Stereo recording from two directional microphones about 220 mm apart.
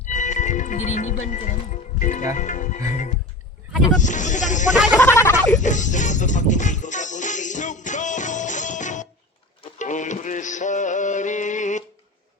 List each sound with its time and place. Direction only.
0.1 s speech: 35° left (ahead or behind)
4.9 s speech: 15° left (ahead or behind)
5.5 s music: 35° left (ahead or behind)